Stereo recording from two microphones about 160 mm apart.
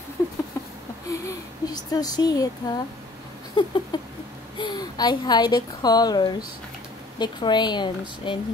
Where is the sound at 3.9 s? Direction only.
25° left (ahead or behind).